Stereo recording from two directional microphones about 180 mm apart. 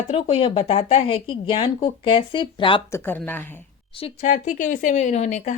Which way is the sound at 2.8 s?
15° left (ahead or behind).